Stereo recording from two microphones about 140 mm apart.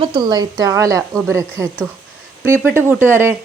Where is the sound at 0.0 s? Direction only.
35° right (ahead or behind).